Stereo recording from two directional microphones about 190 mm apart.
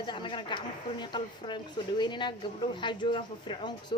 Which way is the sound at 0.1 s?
25° left (ahead or behind).